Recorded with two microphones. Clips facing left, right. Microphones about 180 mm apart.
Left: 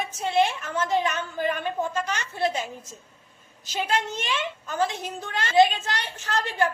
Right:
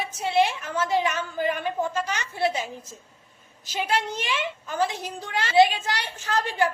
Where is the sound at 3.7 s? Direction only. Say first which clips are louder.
Right 1 dB; 10° right (ahead or behind).